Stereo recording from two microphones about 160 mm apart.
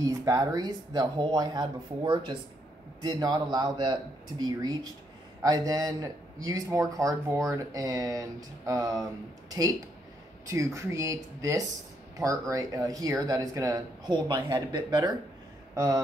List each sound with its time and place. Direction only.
0.0 s a man's voice: 20° right (ahead or behind)